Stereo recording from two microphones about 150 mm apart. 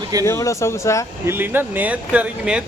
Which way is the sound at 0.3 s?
20° left (ahead or behind).